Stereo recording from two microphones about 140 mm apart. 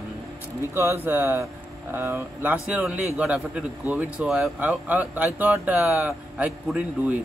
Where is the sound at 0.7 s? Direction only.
15° right (ahead or behind).